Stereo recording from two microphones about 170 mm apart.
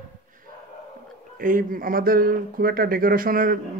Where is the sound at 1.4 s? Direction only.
55° right (ahead or behind).